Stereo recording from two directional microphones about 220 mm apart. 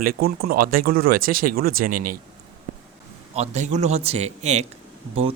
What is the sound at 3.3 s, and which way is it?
Speech, 30° right (ahead or behind).